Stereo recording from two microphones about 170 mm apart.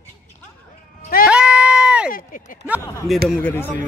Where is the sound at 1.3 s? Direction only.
5° right (ahead or behind).